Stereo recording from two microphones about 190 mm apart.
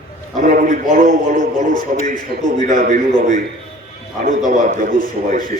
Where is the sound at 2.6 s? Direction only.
40° right (ahead or behind).